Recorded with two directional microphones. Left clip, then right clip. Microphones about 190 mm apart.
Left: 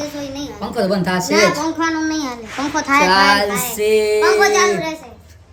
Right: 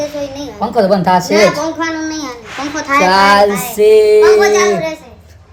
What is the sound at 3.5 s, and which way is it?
Speech, 20° left (ahead or behind).